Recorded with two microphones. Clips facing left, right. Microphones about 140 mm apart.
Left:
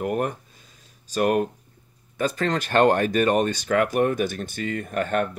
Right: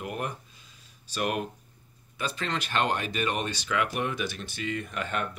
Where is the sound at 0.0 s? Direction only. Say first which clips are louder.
Left 9 dB; 45° left (ahead or behind).